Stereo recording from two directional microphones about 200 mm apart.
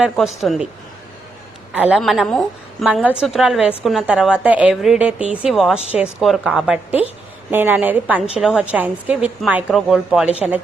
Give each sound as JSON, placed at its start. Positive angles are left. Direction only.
{"t": 0.0, "sound": "a woman's voice", "side_deg": 0}
{"t": 1.7, "sound": "a woman's voice", "side_deg": -5}
{"t": 10.2, "sound": "speech", "side_deg": 30}